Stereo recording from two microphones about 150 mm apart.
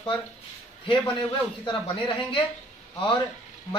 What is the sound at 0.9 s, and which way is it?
Speech, 30° left (ahead or behind).